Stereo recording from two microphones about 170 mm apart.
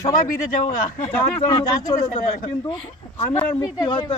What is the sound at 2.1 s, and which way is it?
Speech, 45° left (ahead or behind).